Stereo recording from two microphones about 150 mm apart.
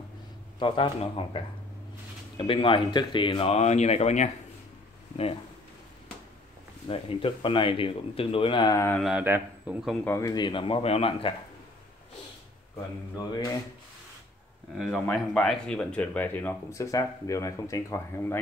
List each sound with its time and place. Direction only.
0.6 s speech: 35° left (ahead or behind)
6.9 s speech: 35° left (ahead or behind); by 9.0 s 20° left (ahead or behind)
9.0 s speech: 10° right (ahead or behind)
10.0 s speech: 20° left (ahead or behind); by 11.3 s 35° left (ahead or behind)
13.2 s speech: 25° left (ahead or behind)
14.8 s speech: centre (ahead or behind); by 18.4 s 15° left (ahead or behind)